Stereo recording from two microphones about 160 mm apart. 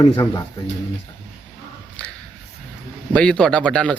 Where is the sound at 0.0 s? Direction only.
25° left (ahead or behind).